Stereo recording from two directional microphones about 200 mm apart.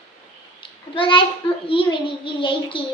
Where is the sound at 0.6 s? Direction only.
25° left (ahead or behind).